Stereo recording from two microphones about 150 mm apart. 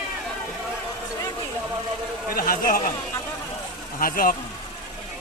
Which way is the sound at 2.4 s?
70° left (ahead or behind).